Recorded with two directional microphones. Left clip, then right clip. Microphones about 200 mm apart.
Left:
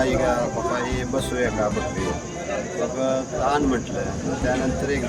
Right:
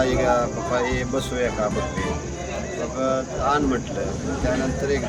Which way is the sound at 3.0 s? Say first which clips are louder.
Right 1 dB; 15° right (ahead or behind).